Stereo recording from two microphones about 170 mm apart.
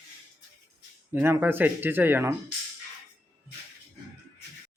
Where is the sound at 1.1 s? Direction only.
10° right (ahead or behind).